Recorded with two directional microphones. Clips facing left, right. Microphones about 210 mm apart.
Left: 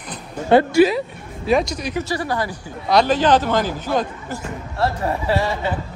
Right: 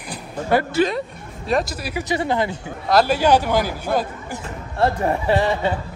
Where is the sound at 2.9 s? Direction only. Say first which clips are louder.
Even; 5° right (ahead or behind).